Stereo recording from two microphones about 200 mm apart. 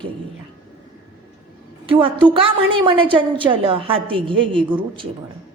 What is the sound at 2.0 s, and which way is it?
A woman's voice, 25° right (ahead or behind).